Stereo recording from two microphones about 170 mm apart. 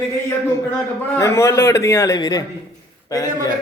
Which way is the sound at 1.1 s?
15° left (ahead or behind).